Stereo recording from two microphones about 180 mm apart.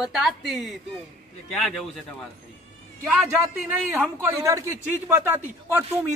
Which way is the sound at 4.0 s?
10° right (ahead or behind).